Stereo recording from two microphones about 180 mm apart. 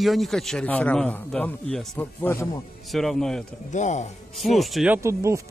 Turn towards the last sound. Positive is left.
turn(degrees=-15)  # may be behind; listen again after turning